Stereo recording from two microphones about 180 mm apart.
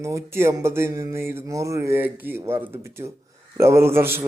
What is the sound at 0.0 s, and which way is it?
Speech, 15° right (ahead or behind).